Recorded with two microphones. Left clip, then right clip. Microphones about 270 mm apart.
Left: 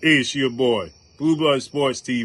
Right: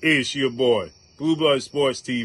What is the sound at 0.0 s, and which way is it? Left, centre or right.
A man's voice, centre.